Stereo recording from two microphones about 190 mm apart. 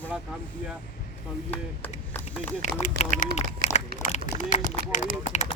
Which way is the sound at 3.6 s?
45° left (ahead or behind).